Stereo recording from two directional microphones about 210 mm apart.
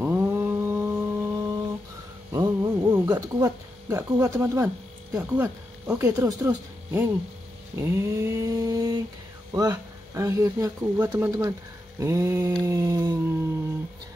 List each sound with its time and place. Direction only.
0.0 s mantra: 10° right (ahead or behind)
2.3 s a sound: 15° right (ahead or behind)
5.1 s speech: 15° right (ahead or behind)